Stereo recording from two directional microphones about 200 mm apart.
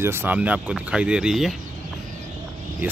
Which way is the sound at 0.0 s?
10° right (ahead or behind).